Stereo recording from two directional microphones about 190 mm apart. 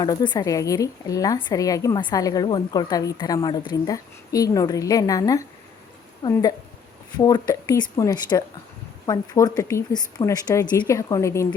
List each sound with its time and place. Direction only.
0.0 s a woman's voice: 25° left (ahead or behind)